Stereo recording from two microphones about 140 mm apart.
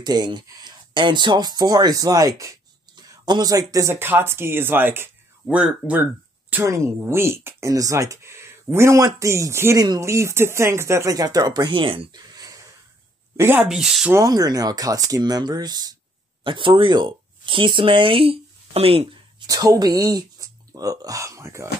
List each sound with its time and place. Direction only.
0.0 s speech: 30° right (ahead or behind); by 6.0 s 10° right (ahead or behind)
6.5 s speech: 20° right (ahead or behind); by 12.2 s 40° right (ahead or behind)
12.2 s wheeze: 25° right (ahead or behind)
13.4 s speech: 15° right (ahead or behind)
13.7 s speech: 5° right (ahead or behind)
14.1 s speech: 25° right (ahead or behind); by 19.0 s 40° right (ahead or behind)
19.4 s speech: 25° right (ahead or behind)